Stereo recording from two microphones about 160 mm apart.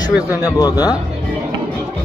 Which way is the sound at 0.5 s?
20° left (ahead or behind).